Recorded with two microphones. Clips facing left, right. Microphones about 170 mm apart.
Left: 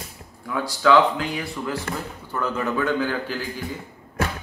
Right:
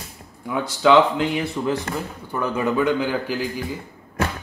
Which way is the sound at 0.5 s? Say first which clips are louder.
Right 2 dB; 20° right (ahead or behind).